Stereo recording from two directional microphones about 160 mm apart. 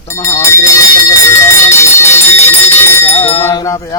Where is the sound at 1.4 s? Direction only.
15° left (ahead or behind).